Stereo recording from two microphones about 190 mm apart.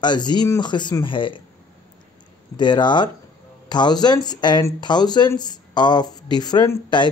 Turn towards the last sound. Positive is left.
turn(degrees=20)  # may be behind; listen again after turning